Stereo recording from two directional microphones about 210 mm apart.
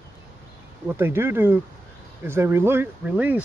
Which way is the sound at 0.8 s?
10° right (ahead or behind).